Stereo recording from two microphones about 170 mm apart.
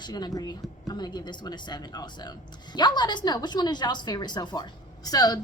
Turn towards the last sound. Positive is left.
turn(degrees=20)  # may be behind; listen again after turning